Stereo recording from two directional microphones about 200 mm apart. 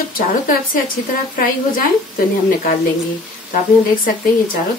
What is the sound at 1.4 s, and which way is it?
A woman's voice, 45° left (ahead or behind).